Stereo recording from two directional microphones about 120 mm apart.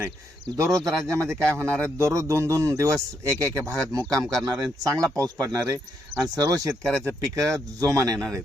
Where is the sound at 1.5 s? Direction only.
20° right (ahead or behind).